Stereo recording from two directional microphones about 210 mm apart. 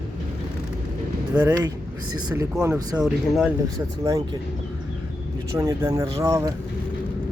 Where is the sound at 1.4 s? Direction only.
10° right (ahead or behind).